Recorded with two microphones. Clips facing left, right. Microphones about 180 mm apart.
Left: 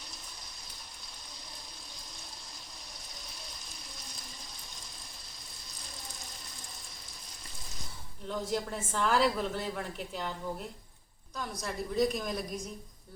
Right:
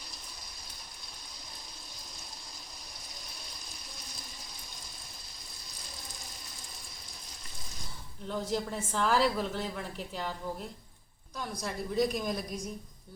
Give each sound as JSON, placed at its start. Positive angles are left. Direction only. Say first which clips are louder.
{"t": 8.3, "sound": "a woman's voice", "louder": "right 1 dB", "side_deg": 0}
{"t": 11.3, "sound": "a woman's voice", "louder": "even", "side_deg": 0}